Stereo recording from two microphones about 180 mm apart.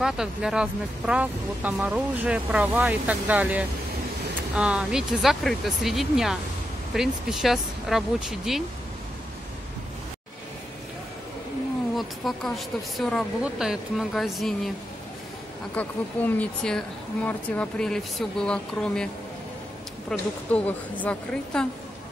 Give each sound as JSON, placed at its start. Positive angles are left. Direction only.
{"t": 0.0, "sound": "speech", "side_deg": -5}
{"t": 11.9, "sound": "speech", "side_deg": 0}
{"t": 15.7, "sound": "speech", "side_deg": 10}
{"t": 20.1, "sound": "a woman's voice", "side_deg": 10}